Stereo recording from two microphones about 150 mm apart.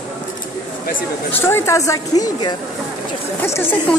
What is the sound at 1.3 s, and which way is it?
A woman's voice, 15° left (ahead or behind).